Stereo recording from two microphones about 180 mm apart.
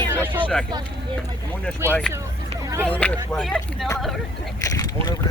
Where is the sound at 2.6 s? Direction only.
15° right (ahead or behind).